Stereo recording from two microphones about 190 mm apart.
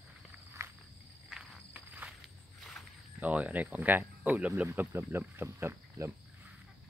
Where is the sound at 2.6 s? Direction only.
Centre (ahead or behind).